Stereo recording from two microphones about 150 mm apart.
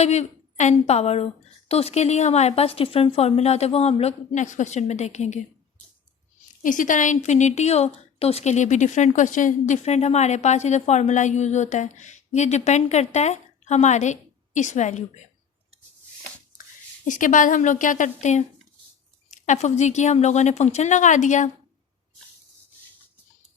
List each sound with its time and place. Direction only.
0.0 s a woman's voice: 50° left (ahead or behind)
6.6 s a woman's voice: 60° left (ahead or behind)
17.1 s a woman's voice: 60° left (ahead or behind)